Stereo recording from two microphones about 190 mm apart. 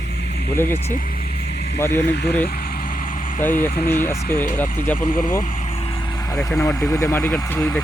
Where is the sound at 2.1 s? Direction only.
60° left (ahead or behind).